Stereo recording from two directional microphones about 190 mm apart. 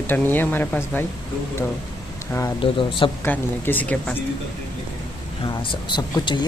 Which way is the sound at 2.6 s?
25° left (ahead or behind).